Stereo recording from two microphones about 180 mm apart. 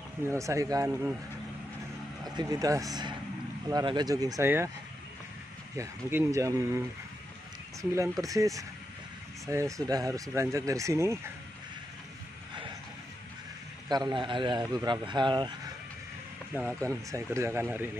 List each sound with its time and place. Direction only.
0.3 s speech: 15° right (ahead or behind)
2.2 s speech: 20° right (ahead or behind)
5.8 s speech: 15° right (ahead or behind)
7.9 s speech: 15° right (ahead or behind)
13.8 s speech: 25° right (ahead or behind)
16.5 s speech: 15° right (ahead or behind)